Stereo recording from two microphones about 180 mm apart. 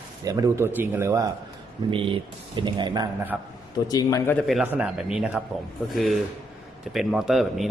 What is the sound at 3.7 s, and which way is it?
Speech, 20° left (ahead or behind).